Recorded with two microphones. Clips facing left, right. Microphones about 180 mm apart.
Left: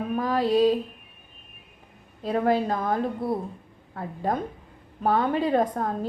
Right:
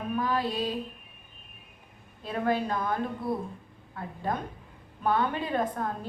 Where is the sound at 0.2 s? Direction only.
40° left (ahead or behind).